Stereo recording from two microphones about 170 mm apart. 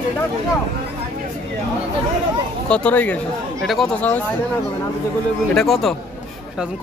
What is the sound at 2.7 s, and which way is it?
Speech, 10° left (ahead or behind).